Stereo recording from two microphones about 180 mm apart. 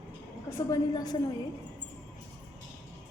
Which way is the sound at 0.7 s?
20° left (ahead or behind).